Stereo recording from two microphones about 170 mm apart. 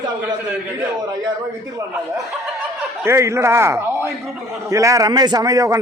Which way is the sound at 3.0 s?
15° right (ahead or behind).